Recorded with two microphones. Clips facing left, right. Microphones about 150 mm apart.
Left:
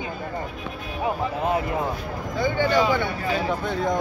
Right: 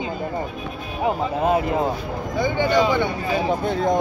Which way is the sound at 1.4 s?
20° right (ahead or behind).